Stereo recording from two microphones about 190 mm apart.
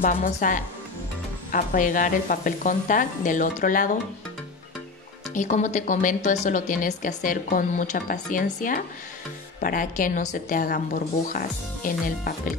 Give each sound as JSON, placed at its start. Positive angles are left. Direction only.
{"t": 0.0, "sound": "a woman's voice", "side_deg": 45}
{"t": 5.3, "sound": "a woman's voice", "side_deg": 40}